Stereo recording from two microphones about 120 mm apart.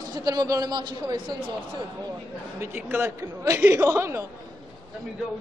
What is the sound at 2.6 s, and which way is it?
A man's voice, 15° right (ahead or behind).